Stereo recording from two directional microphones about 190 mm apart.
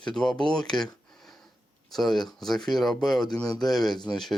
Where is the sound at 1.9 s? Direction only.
Centre (ahead or behind).